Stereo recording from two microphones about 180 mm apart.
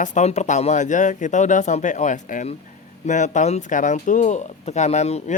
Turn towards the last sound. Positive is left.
turn(degrees=40)  # may be behind; listen again after turning